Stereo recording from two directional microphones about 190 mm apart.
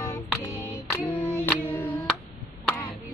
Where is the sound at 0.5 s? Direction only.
15° left (ahead or behind).